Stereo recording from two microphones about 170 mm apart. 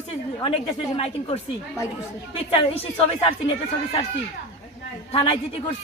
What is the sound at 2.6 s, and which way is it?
Speech, 35° left (ahead or behind).